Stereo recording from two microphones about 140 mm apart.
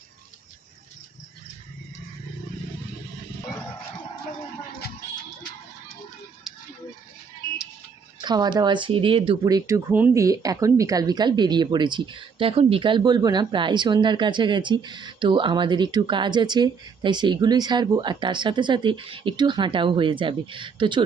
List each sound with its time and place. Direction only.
8.2 s speech: 30° right (ahead or behind)
9.4 s speech: 25° right (ahead or behind)